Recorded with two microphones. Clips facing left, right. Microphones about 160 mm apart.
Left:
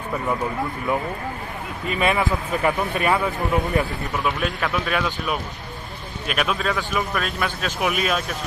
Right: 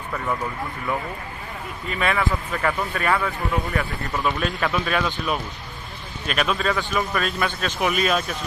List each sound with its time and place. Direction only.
2.0 s speech: 15° left (ahead or behind)
4.2 s a man's voice: centre (ahead or behind)